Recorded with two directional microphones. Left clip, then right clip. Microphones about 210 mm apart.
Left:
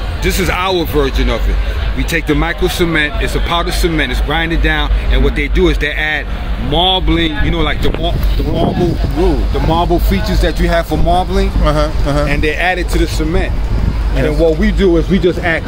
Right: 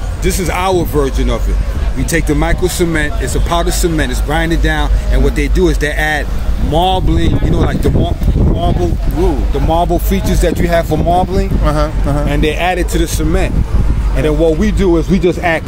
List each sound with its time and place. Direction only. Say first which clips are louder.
0.2 s speech: even; 30° right (ahead or behind)
9.7 s speech: right 1 dB; 40° right (ahead or behind)
11.6 s speech: left 3 dB; 10° right (ahead or behind)
12.3 s speech: right 2 dB; 35° right (ahead or behind)